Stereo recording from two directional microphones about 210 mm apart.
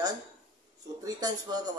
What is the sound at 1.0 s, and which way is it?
Speech, 20° right (ahead or behind).